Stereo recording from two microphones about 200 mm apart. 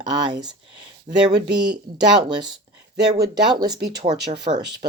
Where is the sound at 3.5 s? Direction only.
20° right (ahead or behind).